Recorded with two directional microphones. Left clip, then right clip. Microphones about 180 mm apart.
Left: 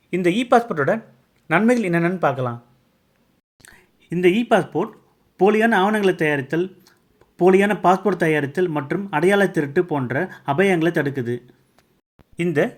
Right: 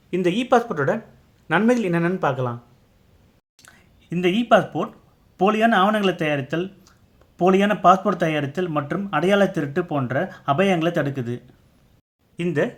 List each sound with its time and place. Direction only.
0.1 s speech: 20° left (ahead or behind)
3.6 s speech: 20° left (ahead or behind)
12.4 s speech: 25° left (ahead or behind)